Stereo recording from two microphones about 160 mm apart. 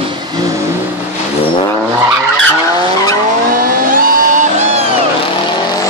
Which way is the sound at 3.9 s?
55° right (ahead or behind).